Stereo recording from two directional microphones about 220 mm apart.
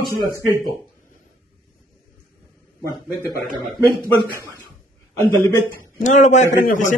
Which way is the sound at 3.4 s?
Centre (ahead or behind).